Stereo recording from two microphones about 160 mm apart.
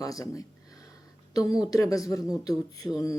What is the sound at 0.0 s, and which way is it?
Speech, 20° left (ahead or behind).